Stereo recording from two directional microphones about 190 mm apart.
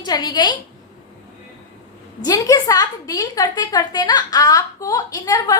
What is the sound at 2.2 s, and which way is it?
A woman's voice, 20° left (ahead or behind).